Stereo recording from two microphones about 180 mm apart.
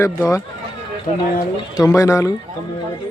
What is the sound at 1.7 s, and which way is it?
Speech, 20° left (ahead or behind).